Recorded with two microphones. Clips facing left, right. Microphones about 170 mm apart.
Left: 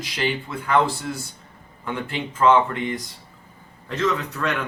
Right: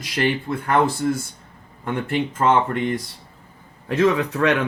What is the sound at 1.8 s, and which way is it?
Speech, 50° right (ahead or behind).